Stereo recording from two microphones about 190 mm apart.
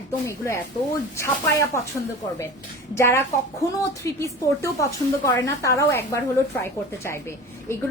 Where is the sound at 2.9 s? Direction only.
15° left (ahead or behind).